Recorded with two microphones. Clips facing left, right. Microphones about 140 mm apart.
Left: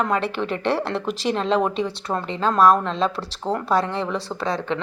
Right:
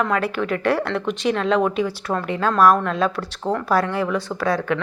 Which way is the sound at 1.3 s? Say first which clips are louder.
Right 1 dB; 30° left (ahead or behind).